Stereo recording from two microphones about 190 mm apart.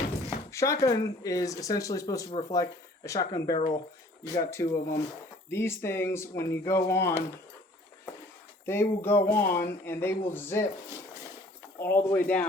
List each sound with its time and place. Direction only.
0.5 s speech: 15° left (ahead or behind)
8.6 s speech: 15° left (ahead or behind)
11.8 s speech: 10° left (ahead or behind)